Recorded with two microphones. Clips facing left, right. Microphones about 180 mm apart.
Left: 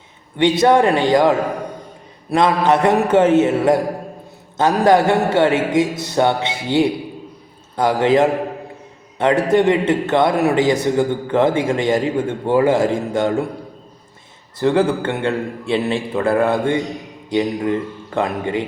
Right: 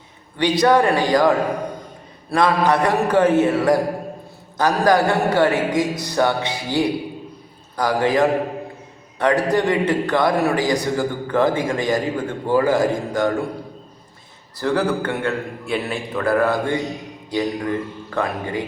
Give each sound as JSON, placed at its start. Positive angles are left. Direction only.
{"t": 0.3, "sound": "a man's voice", "side_deg": 25}
{"t": 2.3, "sound": "a man's voice", "side_deg": 20}
{"t": 14.6, "sound": "a man's voice", "side_deg": 25}